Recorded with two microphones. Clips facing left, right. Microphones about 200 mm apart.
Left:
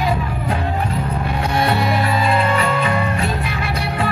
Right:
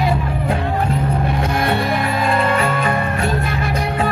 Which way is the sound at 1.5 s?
55° right (ahead or behind).